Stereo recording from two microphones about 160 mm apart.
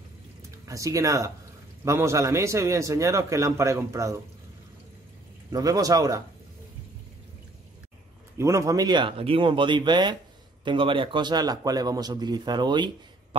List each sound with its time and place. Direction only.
0.7 s speech: 20° right (ahead or behind)
5.5 s speech: 20° right (ahead or behind)
8.4 s speech: 20° right (ahead or behind)